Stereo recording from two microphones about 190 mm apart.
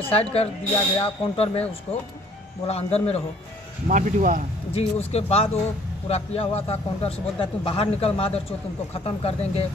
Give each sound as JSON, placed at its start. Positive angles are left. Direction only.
{"t": 0.0, "sound": "a man's voice", "side_deg": 30}
{"t": 2.6, "sound": "a man's voice", "side_deg": 30}
{"t": 3.9, "sound": "speech", "side_deg": -40}
{"t": 4.7, "sound": "a man's voice", "side_deg": 35}